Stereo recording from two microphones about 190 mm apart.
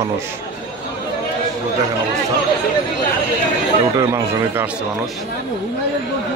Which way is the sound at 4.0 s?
15° right (ahead or behind).